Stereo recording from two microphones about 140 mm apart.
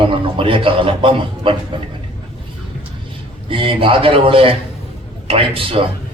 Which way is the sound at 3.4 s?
40° right (ahead or behind).